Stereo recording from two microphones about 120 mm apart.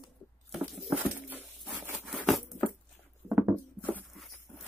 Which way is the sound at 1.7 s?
15° right (ahead or behind).